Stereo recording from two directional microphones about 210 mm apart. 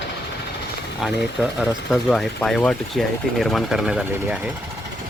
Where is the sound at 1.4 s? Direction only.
5° right (ahead or behind).